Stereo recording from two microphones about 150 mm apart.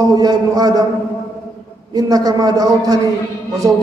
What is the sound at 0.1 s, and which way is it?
Speech, 25° right (ahead or behind).